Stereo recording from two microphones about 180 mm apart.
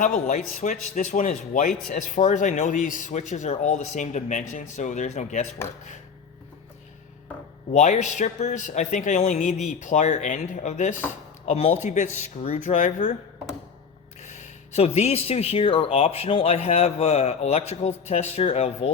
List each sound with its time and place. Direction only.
0.0 s speech: 45° left (ahead or behind)
7.7 s speech: 40° left (ahead or behind)
14.2 s speech: 40° left (ahead or behind)